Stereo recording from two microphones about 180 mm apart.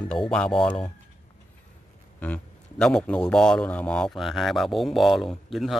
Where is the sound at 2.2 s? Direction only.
10° left (ahead or behind).